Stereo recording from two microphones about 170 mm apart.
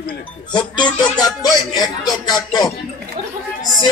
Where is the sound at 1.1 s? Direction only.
25° left (ahead or behind).